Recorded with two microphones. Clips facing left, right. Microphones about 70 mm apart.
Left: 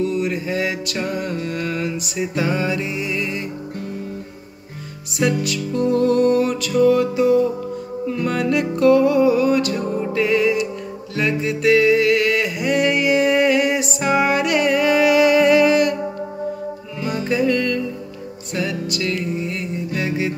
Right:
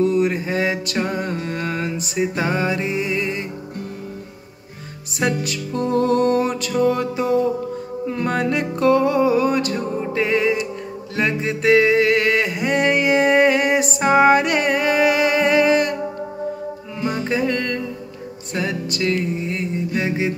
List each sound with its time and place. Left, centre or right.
0.0 s a sound: right
1.0 s music: right
5.2 s music: right
17.0 s music: right